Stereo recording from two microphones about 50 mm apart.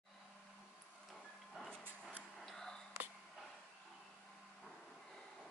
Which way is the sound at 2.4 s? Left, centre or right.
Centre.